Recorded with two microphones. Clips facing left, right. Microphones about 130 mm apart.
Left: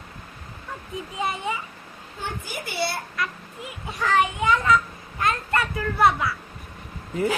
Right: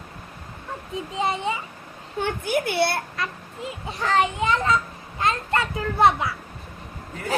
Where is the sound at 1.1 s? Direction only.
25° right (ahead or behind).